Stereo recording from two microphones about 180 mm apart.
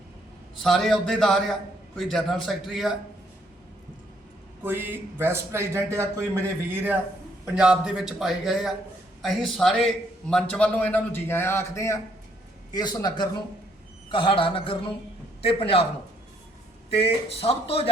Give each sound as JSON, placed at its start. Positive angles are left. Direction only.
{"t": 0.6, "sound": "a man's voice", "side_deg": 0}
{"t": 4.6, "sound": "a man's voice", "side_deg": -10}
{"t": 7.4, "sound": "a man's voice", "side_deg": -5}
{"t": 16.9, "sound": "speech", "side_deg": 35}